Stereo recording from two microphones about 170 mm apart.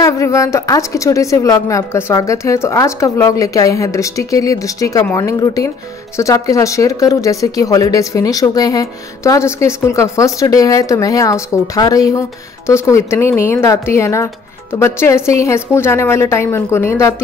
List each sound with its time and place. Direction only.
0.0 s a woman's voice: 20° left (ahead or behind)